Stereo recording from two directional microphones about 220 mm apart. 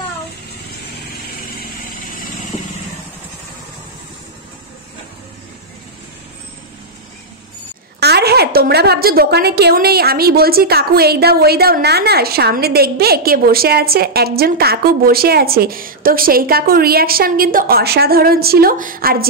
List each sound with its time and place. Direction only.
8.0 s a woman's voice: 45° right (ahead or behind)